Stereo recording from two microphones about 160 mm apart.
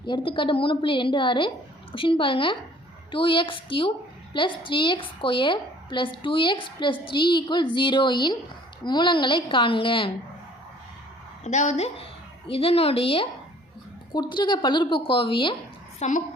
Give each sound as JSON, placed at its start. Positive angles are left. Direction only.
{"t": 0.0, "sound": "a woman's voice", "side_deg": 30}
{"t": 11.4, "sound": "a woman's voice", "side_deg": 45}
{"t": 16.0, "sound": "a child's voice", "side_deg": 50}